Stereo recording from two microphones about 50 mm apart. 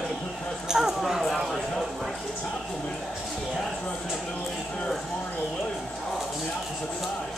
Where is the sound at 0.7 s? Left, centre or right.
Centre.